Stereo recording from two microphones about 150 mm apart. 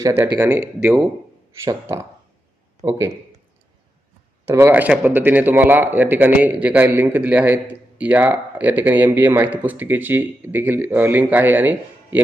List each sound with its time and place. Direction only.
0.3 s a man's voice: 20° right (ahead or behind)
4.4 s a man's voice: 15° right (ahead or behind)